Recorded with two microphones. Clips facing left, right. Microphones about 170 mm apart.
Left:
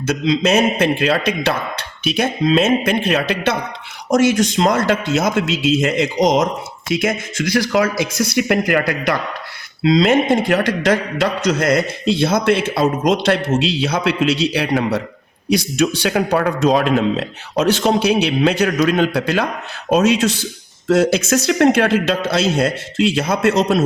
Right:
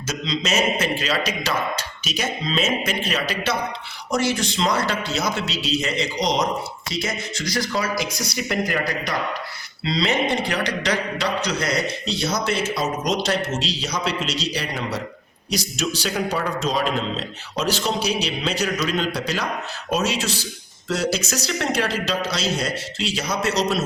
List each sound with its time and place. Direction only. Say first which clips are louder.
0.0 s a man's voice: left 10 dB; 60° left (ahead or behind); by 7.9 s 75° left (ahead or behind)
8.2 s speech: left 8 dB; 60° left (ahead or behind)
9.8 s a man's voice: left 9 dB; 50° left (ahead or behind)